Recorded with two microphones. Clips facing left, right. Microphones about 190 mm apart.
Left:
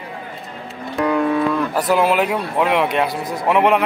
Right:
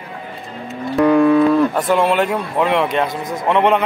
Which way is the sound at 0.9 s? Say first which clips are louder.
Right 6 dB; 40° right (ahead or behind).